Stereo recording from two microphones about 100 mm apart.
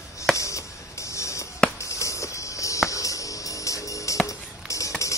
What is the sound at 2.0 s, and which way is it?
Music, 30° left (ahead or behind).